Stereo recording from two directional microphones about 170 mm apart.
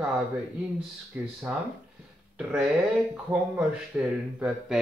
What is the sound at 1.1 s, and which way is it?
Speech, 10° right (ahead or behind).